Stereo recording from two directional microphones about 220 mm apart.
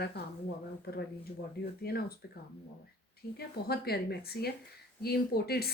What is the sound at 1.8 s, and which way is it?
Speech, 45° left (ahead or behind).